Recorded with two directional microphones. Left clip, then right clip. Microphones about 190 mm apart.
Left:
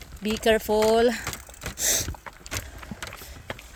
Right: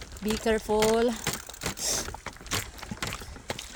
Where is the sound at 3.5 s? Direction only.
35° right (ahead or behind).